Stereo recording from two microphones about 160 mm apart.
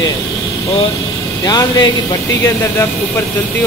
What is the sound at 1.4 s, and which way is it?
Speech, 25° left (ahead or behind).